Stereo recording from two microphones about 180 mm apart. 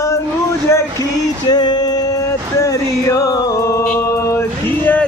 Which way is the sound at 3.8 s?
10° left (ahead or behind).